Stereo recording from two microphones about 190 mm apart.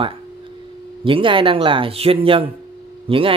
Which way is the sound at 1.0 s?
25° right (ahead or behind).